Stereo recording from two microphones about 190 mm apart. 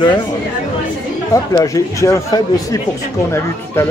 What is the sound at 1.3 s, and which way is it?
Speech, 15° left (ahead or behind).